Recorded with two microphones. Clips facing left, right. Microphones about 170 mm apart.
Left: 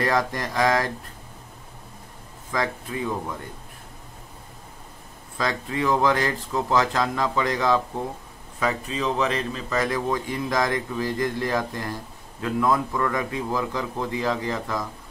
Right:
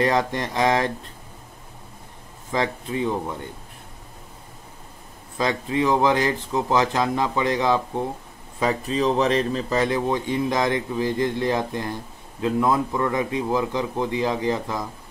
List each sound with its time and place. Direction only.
0.0 s speech: 25° right (ahead or behind)
2.5 s speech: 25° right (ahead or behind)
5.4 s speech: 20° right (ahead or behind)
8.5 s speech: 35° right (ahead or behind)